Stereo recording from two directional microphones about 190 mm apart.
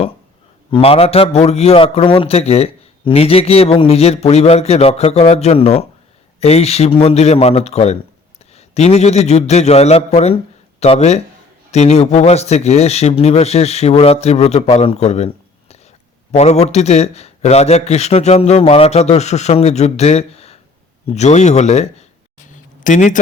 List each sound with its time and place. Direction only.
0.7 s a man's voice: 30° left (ahead or behind)
16.3 s a man's voice: 35° left (ahead or behind)
22.4 s a sound: 40° left (ahead or behind)